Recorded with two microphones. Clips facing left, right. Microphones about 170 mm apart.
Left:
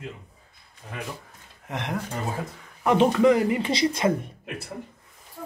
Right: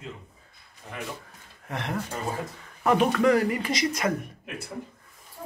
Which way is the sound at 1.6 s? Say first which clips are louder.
Left 1 dB; 15° left (ahead or behind).